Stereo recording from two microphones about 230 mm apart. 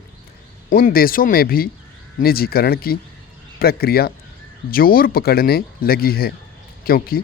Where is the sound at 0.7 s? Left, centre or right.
Left.